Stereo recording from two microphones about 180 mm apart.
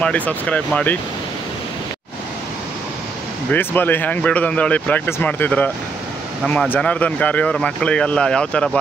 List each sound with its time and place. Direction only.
0.0 s speech: 10° left (ahead or behind)
3.5 s speech: 10° left (ahead or behind)